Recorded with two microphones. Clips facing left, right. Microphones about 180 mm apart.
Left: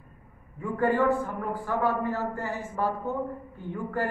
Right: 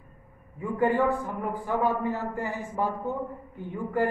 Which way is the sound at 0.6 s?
15° right (ahead or behind).